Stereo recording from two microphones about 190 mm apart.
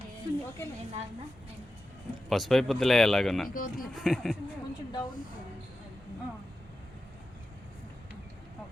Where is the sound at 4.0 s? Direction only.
Centre (ahead or behind).